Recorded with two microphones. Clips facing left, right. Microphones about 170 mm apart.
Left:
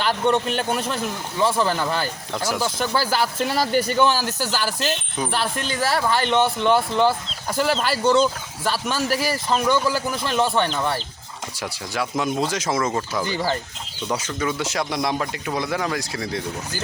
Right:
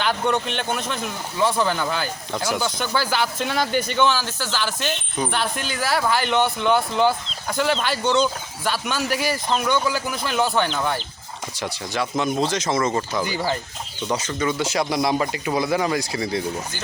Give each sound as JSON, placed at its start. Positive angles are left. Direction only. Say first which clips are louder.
{"t": 0.0, "sound": "speech", "louder": "left 2 dB", "side_deg": 0}
{"t": 4.3, "sound": "speech", "louder": "left 2 dB", "side_deg": 40}
{"t": 4.6, "sound": "speech", "louder": "left 1 dB", "side_deg": 5}